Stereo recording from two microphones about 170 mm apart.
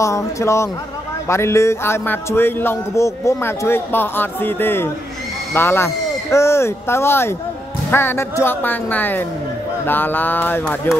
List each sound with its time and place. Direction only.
0.0 s a man's voice: 15° left (ahead or behind)